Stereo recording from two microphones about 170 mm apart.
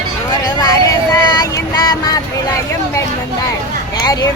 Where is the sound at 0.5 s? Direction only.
20° left (ahead or behind).